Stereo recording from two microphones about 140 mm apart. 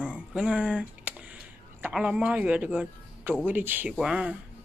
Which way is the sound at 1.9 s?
5° right (ahead or behind).